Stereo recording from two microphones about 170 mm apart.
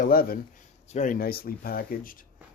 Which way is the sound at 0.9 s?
50° left (ahead or behind).